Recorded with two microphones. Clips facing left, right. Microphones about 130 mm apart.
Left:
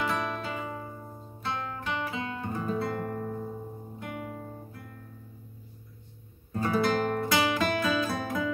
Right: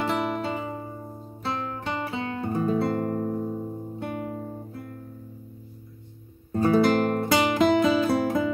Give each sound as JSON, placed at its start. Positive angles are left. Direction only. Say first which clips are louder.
{"t": 0.0, "sound": "music", "louder": "right 5 dB", "side_deg": -30}
{"t": 4.0, "sound": "guitar", "louder": "right 5 dB", "side_deg": -35}
{"t": 6.5, "sound": "music", "louder": "right 6 dB", "side_deg": -30}